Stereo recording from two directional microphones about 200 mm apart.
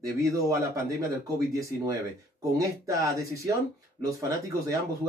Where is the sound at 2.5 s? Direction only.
15° right (ahead or behind).